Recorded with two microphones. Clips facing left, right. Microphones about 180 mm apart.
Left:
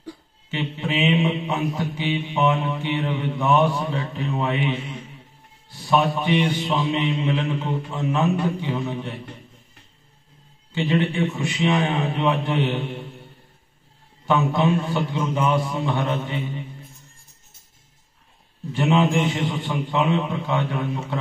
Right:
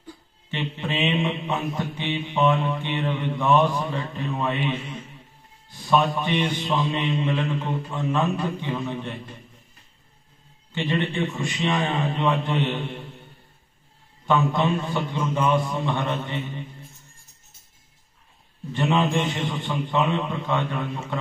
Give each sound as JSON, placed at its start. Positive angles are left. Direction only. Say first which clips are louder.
{"t": 0.5, "sound": "mantra", "louder": "left 2 dB", "side_deg": 10}
{"t": 5.9, "sound": "mantra", "louder": "left 2 dB", "side_deg": 10}
{"t": 10.8, "sound": "mantra", "louder": "left 3 dB", "side_deg": 10}
{"t": 14.2, "sound": "mantra", "louder": "left 2 dB", "side_deg": 10}
{"t": 18.7, "sound": "mantra", "louder": "left 3 dB", "side_deg": 10}